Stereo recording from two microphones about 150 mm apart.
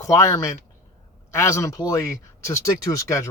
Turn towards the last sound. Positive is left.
turn(degrees=20)  # may be behind; listen again after turning